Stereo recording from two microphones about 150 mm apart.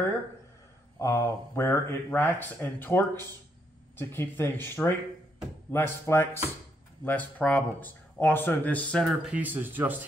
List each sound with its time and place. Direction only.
0.9 s speech: 20° left (ahead or behind); by 9.9 s 15° right (ahead or behind)